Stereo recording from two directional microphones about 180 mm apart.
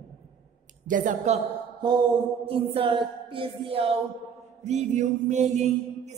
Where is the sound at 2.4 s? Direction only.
30° right (ahead or behind).